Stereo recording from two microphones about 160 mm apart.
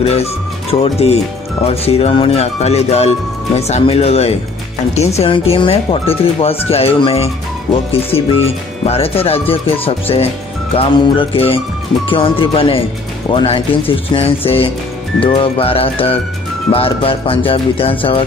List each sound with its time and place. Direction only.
0.0 s speech: 40° left (ahead or behind)